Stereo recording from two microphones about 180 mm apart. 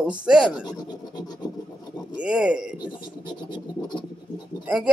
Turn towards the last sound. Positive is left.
turn(degrees=-5)  # may be behind; listen again after turning